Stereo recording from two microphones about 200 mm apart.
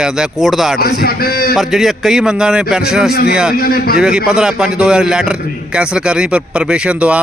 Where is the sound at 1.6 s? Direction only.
Centre (ahead or behind).